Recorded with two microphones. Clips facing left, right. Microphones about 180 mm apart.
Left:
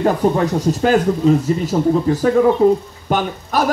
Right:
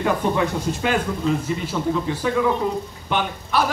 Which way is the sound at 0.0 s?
40° left (ahead or behind).